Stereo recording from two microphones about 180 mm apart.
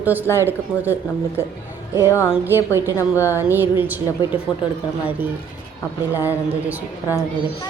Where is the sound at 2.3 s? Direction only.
10° right (ahead or behind).